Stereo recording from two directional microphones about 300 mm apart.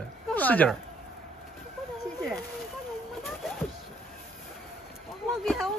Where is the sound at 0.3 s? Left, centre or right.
Centre.